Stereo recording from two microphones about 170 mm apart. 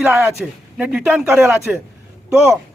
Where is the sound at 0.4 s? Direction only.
Centre (ahead or behind).